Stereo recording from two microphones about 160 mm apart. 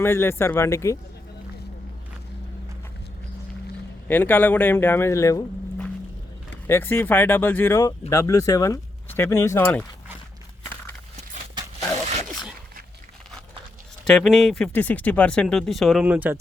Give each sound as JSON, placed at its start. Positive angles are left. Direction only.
{"t": 0.0, "sound": "speech", "side_deg": 15}
{"t": 4.1, "sound": "speech", "side_deg": 10}
{"t": 6.7, "sound": "speech", "side_deg": 15}
{"t": 14.0, "sound": "speech", "side_deg": 0}